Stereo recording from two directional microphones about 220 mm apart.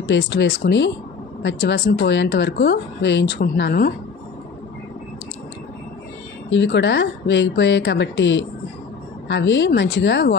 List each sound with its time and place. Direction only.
0.0 s speech: 55° left (ahead or behind)
6.5 s speech: 55° left (ahead or behind)